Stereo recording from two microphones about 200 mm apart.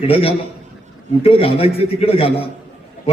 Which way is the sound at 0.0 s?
30° left (ahead or behind).